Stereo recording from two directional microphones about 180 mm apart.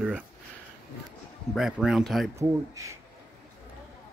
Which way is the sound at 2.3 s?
15° right (ahead or behind).